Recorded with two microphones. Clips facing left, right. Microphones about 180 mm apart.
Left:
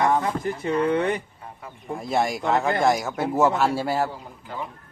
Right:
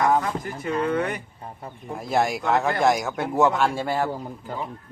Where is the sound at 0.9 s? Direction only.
30° left (ahead or behind).